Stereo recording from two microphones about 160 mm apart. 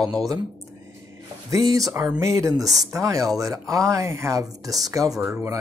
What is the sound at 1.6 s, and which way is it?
Speech, 20° right (ahead or behind).